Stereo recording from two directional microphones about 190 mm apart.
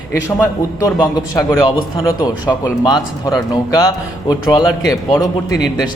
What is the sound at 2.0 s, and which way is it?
Speech, 25° left (ahead or behind).